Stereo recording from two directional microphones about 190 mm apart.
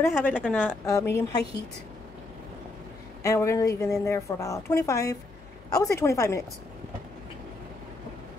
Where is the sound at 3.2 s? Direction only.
15° left (ahead or behind).